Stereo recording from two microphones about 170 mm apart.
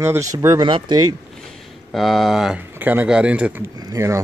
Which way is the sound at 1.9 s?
Centre (ahead or behind).